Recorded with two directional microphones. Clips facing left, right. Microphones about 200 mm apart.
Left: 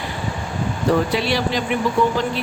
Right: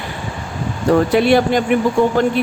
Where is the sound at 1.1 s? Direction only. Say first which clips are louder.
Right 8 dB; 55° right (ahead or behind).